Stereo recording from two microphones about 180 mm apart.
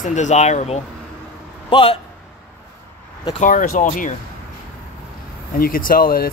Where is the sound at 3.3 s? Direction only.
50° left (ahead or behind).